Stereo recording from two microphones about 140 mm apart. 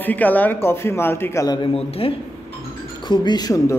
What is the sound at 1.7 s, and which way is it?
Speech, 40° left (ahead or behind).